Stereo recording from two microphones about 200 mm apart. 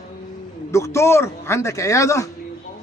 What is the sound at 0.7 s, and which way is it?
A man's voice, 15° left (ahead or behind).